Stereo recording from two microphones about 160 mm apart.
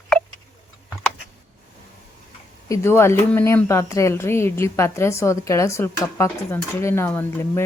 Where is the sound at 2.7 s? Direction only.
15° left (ahead or behind).